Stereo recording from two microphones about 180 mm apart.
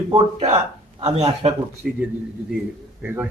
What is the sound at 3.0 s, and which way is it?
Speech, 10° right (ahead or behind).